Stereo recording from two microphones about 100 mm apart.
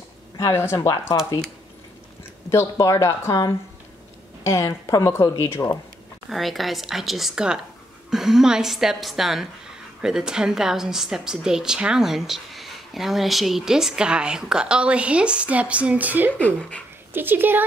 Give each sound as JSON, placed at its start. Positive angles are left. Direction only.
{"t": 0.4, "sound": "speech", "side_deg": 30}
{"t": 2.5, "sound": "speech", "side_deg": 30}
{"t": 6.3, "sound": "a woman's voice", "side_deg": 0}
{"t": 16.3, "sound": "speech", "side_deg": 15}
{"t": 17.1, "sound": "a woman's voice", "side_deg": -20}